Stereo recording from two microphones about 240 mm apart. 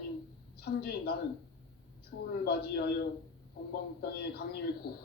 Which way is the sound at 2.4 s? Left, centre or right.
Left.